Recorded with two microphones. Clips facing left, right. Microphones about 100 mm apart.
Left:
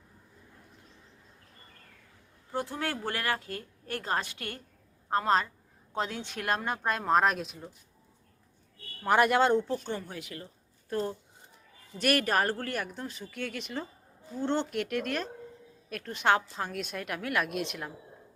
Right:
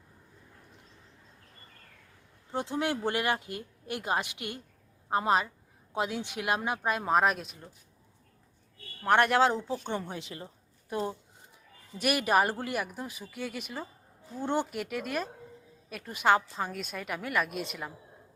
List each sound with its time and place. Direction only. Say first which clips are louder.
2.5 s a woman's voice: right 2 dB; 20° right (ahead or behind); by 7.7 s centre (ahead or behind)
9.0 s a woman's voice: even; centre (ahead or behind); by 10.0 s 15° right (ahead or behind)
10.0 s speech: right 2 dB; 25° right (ahead or behind)
10.8 s a woman's voice: left 1 dB; 10° right (ahead or behind)